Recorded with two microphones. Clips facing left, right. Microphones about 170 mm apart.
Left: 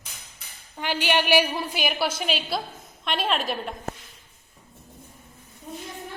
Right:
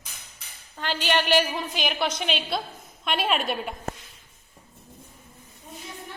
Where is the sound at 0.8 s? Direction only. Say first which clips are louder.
Left 1 dB; 10° left (ahead or behind).